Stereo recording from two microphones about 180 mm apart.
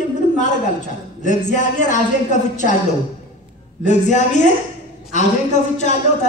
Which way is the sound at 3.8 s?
40° left (ahead or behind).